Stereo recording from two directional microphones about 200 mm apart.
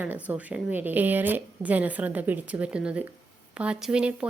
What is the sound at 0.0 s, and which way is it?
Speech, 10° right (ahead or behind).